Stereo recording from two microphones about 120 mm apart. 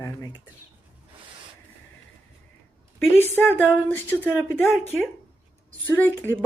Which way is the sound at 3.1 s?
15° left (ahead or behind).